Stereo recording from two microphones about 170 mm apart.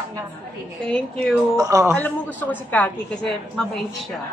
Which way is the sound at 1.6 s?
20° right (ahead or behind).